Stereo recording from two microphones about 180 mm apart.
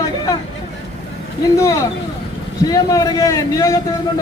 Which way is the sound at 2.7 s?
20° left (ahead or behind).